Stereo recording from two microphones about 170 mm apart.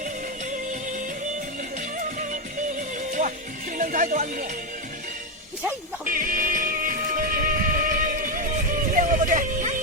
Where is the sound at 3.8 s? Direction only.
50° right (ahead or behind).